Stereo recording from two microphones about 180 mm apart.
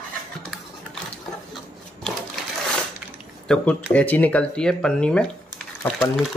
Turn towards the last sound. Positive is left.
turn(degrees=0)  # may be behind; listen again after turning